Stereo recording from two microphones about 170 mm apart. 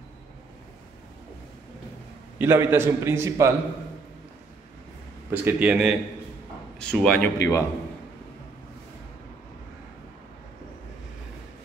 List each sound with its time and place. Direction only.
2.3 s a man's voice: 15° right (ahead or behind)
5.3 s a man's voice: 10° right (ahead or behind)
7.3 s a man's voice: 15° left (ahead or behind)